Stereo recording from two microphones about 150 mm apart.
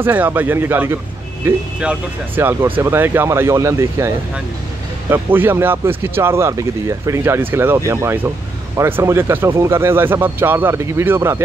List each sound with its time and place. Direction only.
0.0 s speech: 15° right (ahead or behind)
5.1 s speech: 15° right (ahead or behind)